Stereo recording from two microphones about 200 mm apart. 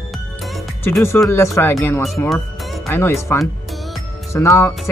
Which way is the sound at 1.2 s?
15° left (ahead or behind).